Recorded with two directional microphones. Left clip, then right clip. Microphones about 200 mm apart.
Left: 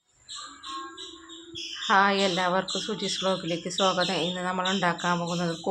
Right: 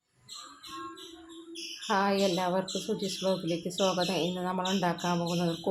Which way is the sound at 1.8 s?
5° right (ahead or behind).